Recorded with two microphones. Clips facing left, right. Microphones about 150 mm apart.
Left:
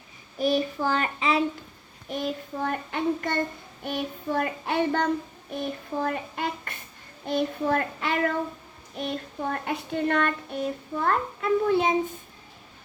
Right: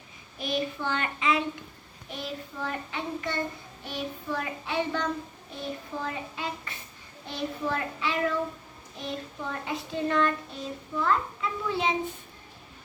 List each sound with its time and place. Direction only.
0.3 s child singing: 40° left (ahead or behind)
2.0 s child singing: 45° left (ahead or behind)
9.0 s a child's voice: 60° left (ahead or behind)